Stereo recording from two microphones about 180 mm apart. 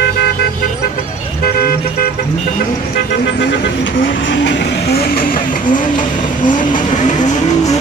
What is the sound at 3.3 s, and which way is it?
Vehicle, 75° left (ahead or behind).